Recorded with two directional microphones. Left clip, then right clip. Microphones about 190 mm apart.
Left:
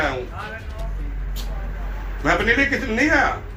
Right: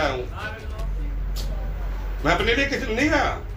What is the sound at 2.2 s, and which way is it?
Speech, 20° right (ahead or behind).